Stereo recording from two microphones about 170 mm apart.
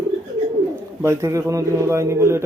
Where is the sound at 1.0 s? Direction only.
15° right (ahead or behind).